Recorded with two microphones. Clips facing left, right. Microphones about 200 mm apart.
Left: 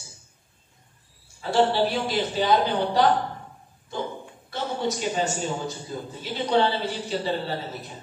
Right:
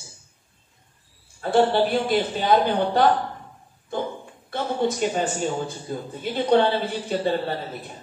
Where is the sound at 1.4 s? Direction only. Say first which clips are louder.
Right 2 dB; 55° right (ahead or behind).